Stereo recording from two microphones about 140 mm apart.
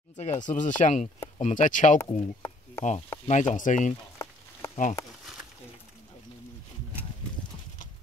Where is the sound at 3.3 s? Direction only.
60° left (ahead or behind).